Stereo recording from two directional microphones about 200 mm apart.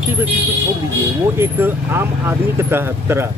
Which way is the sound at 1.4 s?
10° right (ahead or behind).